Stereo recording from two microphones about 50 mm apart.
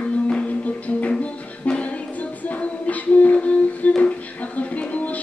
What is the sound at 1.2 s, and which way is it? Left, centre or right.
Music, left.